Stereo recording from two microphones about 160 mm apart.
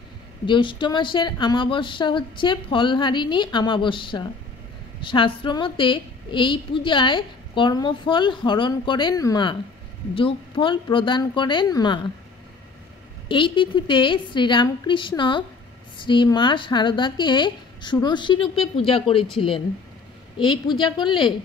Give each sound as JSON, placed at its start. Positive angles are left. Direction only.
{"t": 0.5, "sound": "a woman's voice", "side_deg": 30}
{"t": 13.3, "sound": "a woman's voice", "side_deg": 30}
{"t": 20.3, "sound": "a woman's voice", "side_deg": 30}